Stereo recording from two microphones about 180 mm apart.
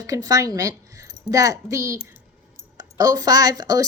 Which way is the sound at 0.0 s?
20° right (ahead or behind).